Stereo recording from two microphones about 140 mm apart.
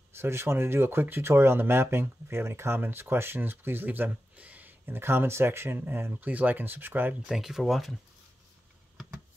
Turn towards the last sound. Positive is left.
turn(degrees=0)  # may be behind; listen again after turning